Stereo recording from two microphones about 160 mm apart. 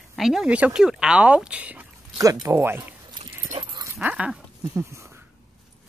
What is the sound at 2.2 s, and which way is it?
Speech, 20° right (ahead or behind).